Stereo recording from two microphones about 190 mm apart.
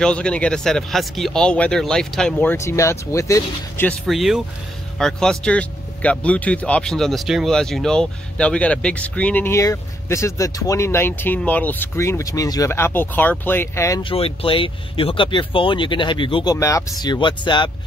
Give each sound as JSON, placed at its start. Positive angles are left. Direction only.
{"t": 0.0, "sound": "speech", "side_deg": 5}
{"t": 4.1, "sound": "speech", "side_deg": 0}
{"t": 14.1, "sound": "speech", "side_deg": 30}
{"t": 16.5, "sound": "speech", "side_deg": 15}